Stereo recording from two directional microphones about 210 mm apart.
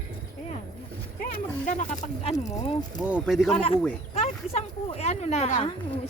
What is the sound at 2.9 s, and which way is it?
Speech, 5° right (ahead or behind).